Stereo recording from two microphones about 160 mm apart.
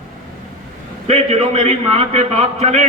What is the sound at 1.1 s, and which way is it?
A man's voice, 40° right (ahead or behind).